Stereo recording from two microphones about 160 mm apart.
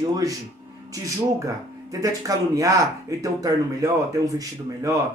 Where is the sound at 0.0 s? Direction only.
20° right (ahead or behind).